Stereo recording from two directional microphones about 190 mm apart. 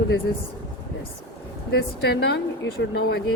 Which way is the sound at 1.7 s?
60° left (ahead or behind).